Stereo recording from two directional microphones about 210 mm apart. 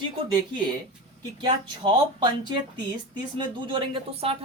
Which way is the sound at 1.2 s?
20° right (ahead or behind).